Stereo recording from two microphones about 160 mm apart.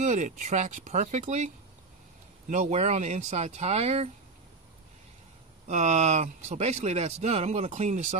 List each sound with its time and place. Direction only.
0.0 s speech: 45° right (ahead or behind)
2.5 s speech: 45° right (ahead or behind)
5.7 s speech: 45° right (ahead or behind)